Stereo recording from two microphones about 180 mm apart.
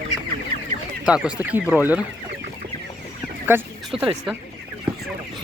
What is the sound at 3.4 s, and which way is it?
Speech, 5° right (ahead or behind).